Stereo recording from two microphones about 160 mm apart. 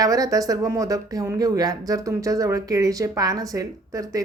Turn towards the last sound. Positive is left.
turn(degrees=-20)  # may be behind; listen again after turning